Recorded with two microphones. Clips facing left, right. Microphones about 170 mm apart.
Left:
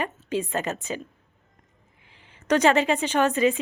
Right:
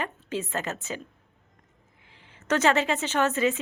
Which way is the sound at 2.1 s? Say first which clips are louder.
Left 4 dB; 15° left (ahead or behind).